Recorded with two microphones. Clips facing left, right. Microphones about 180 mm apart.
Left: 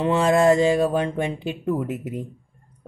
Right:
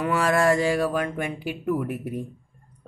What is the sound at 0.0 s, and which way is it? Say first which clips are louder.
Speech: left 4 dB; 25° left (ahead or behind).